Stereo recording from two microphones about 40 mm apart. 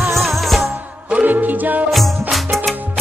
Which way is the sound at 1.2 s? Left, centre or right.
Right.